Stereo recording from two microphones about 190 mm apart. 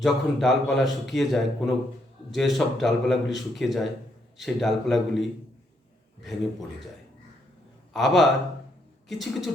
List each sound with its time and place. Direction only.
0.0 s a man's voice: centre (ahead or behind)
7.9 s a man's voice: centre (ahead or behind)